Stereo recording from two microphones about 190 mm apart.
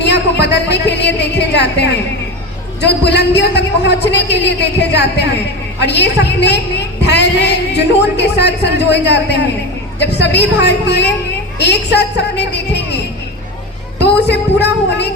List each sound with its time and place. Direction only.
0.0 s a woman's voice: 65° left (ahead or behind)
14.0 s a man's voice: 65° left (ahead or behind)